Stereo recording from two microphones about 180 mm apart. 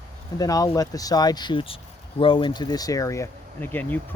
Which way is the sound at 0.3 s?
20° left (ahead or behind).